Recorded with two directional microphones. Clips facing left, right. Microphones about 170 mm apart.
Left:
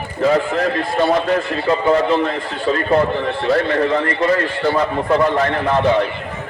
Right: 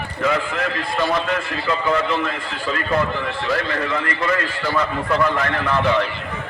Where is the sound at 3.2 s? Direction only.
55° left (ahead or behind).